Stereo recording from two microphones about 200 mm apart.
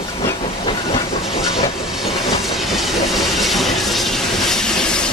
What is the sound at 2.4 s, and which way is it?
Train, centre (ahead or behind).